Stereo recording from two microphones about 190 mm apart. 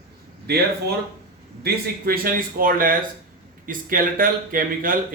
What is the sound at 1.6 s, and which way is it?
Speech, 55° right (ahead or behind).